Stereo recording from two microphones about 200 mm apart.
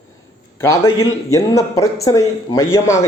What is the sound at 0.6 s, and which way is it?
A man's voice, 15° left (ahead or behind).